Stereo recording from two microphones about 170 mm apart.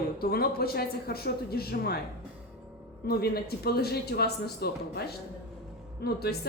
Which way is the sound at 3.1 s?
65° left (ahead or behind).